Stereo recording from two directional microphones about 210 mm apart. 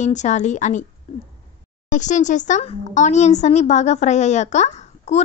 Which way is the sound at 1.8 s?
35° left (ahead or behind).